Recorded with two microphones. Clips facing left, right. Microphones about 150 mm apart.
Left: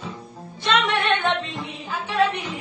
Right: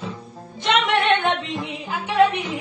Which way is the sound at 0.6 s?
20° right (ahead or behind).